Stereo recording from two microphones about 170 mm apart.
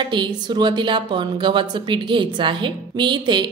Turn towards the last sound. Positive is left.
turn(degrees=-25)  # may be behind; listen again after turning